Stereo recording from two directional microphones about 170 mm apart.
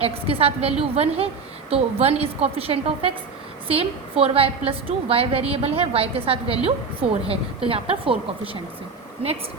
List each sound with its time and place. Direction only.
0.0 s a woman's voice: 35° right (ahead or behind)